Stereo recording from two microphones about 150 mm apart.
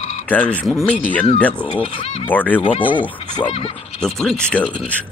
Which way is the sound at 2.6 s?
35° left (ahead or behind).